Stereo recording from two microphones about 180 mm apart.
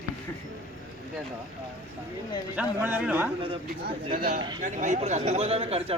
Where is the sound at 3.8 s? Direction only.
60° right (ahead or behind).